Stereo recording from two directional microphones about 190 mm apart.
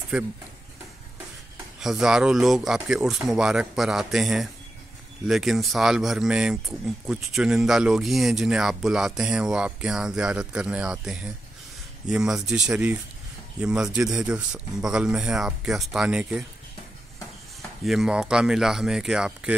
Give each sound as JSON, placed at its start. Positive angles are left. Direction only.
{"t": 0.1, "sound": "speech", "side_deg": -5}
{"t": 1.8, "sound": "speech", "side_deg": 0}
{"t": 17.6, "sound": "speech", "side_deg": 0}